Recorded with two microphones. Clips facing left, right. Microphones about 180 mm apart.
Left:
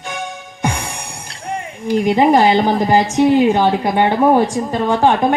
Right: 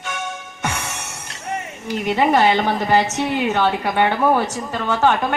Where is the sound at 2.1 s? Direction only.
30° left (ahead or behind).